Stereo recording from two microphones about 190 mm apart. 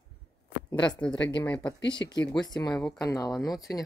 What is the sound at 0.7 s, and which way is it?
Speech, 20° left (ahead or behind).